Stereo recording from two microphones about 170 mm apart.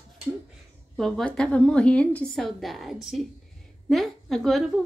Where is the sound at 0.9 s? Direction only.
Centre (ahead or behind).